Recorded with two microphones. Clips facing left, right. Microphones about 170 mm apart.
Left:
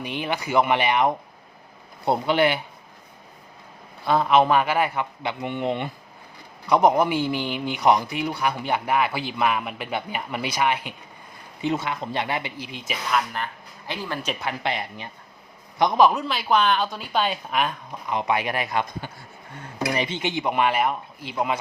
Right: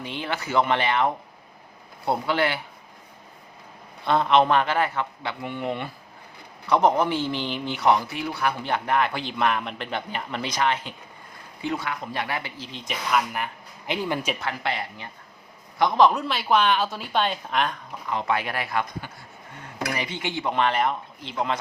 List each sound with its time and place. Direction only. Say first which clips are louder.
0.0 s speech: left 3 dB; 15° left (ahead or behind)
4.0 s speech: left 1 dB; 5° left (ahead or behind)
11.6 s speech: left 3 dB; 25° left (ahead or behind); by 13.2 s centre (ahead or behind)
13.3 s speech: even; 15° right (ahead or behind)
14.3 s speech: left 1 dB; 15° left (ahead or behind)
16.0 s speech: even; 5° left (ahead or behind)
18.1 s speech: left 2 dB; 15° left (ahead or behind)